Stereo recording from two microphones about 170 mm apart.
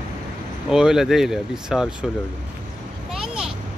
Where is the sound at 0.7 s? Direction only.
5° right (ahead or behind).